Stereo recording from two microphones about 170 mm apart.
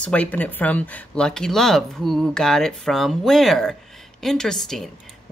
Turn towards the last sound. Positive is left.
turn(degrees=0)  # may be behind; listen again after turning